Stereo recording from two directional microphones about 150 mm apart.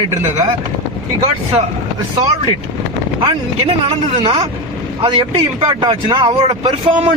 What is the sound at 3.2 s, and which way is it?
Speech, 40° right (ahead or behind).